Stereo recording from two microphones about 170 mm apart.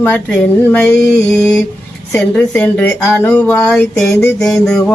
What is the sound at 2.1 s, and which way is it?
Speech, 10° left (ahead or behind).